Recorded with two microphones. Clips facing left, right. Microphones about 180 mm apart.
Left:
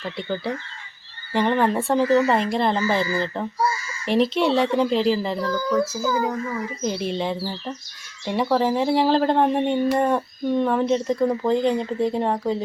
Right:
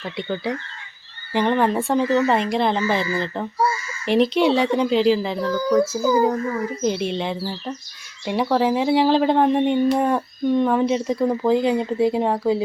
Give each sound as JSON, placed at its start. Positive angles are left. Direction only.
{"t": 0.0, "sound": "speech", "side_deg": 0}
{"t": 5.5, "sound": "speech", "side_deg": -15}
{"t": 6.8, "sound": "speech", "side_deg": 0}